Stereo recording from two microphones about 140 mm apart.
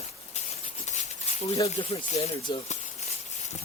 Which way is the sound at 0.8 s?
55° left (ahead or behind).